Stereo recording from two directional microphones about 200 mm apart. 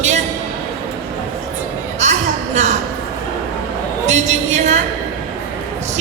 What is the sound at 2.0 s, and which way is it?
Speech, 35° right (ahead or behind).